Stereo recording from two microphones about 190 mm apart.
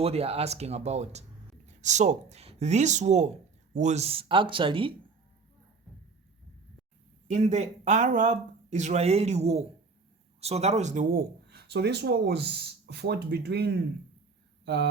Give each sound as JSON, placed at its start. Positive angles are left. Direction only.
{"t": 0.0, "sound": "speech", "side_deg": -30}
{"t": 7.3, "sound": "speech", "side_deg": -40}
{"t": 14.6, "sound": "a sound", "side_deg": -60}